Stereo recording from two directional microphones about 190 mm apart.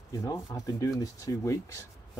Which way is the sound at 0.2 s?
15° left (ahead or behind).